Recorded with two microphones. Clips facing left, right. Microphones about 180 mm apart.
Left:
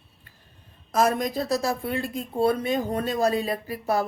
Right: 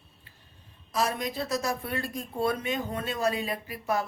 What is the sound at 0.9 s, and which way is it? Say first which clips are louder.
Speech: left 6 dB; 45° left (ahead or behind).